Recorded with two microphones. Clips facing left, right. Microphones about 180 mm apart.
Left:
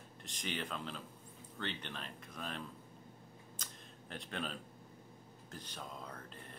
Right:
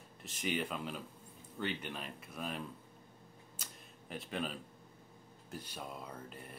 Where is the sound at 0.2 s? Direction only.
5° right (ahead or behind).